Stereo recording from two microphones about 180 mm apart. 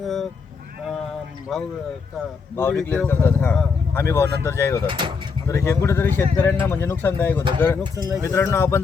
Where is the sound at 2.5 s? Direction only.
10° left (ahead or behind).